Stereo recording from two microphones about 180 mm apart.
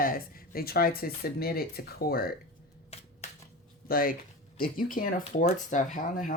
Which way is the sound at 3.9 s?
55° left (ahead or behind).